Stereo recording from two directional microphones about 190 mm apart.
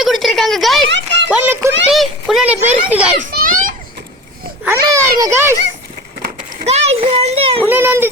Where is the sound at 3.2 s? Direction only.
45° right (ahead or behind).